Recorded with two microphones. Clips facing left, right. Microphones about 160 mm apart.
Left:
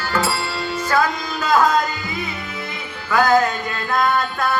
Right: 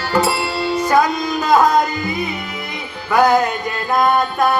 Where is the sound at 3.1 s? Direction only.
15° right (ahead or behind).